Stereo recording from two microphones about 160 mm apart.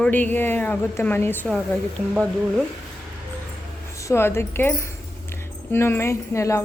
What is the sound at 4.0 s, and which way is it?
A woman's voice, 15° left (ahead or behind).